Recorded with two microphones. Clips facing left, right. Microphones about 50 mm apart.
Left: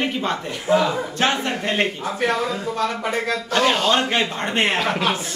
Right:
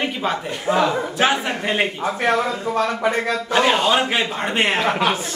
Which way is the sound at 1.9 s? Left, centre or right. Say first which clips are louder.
Right 2 dB; right.